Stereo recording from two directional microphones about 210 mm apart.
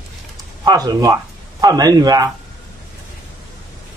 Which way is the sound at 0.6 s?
20° right (ahead or behind).